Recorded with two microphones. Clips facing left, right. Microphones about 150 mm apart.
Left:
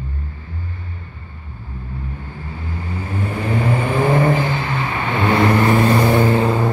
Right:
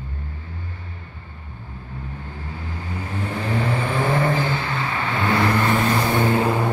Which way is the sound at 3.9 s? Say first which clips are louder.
Left 6 dB; 15° left (ahead or behind).